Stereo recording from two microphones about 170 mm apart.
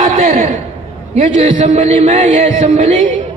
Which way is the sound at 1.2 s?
45° right (ahead or behind).